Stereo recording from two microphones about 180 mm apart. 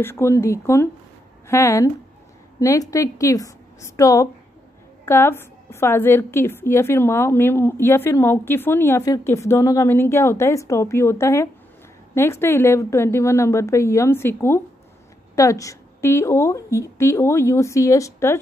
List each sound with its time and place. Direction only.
0.0 s a woman's voice: 15° left (ahead or behind)